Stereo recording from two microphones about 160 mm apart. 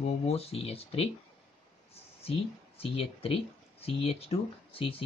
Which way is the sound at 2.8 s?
35° left (ahead or behind).